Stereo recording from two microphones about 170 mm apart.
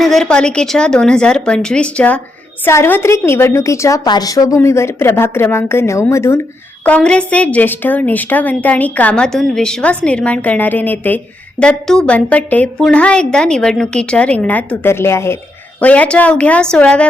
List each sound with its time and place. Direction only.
0.0 s a woman's voice: centre (ahead or behind)